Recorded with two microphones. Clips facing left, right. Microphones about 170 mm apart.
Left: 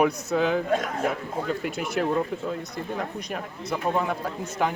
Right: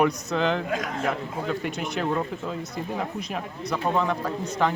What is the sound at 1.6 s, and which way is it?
Speech, centre (ahead or behind).